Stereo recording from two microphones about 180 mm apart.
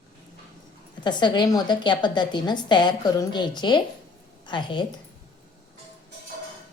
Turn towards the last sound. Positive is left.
turn(degrees=25)  # may be behind; listen again after turning